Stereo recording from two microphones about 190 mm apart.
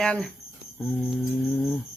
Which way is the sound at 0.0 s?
5° left (ahead or behind).